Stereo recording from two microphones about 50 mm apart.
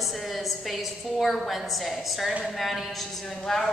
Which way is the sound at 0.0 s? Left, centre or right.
Centre.